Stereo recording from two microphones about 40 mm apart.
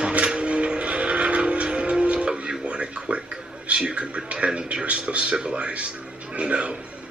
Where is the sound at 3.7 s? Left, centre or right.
Right.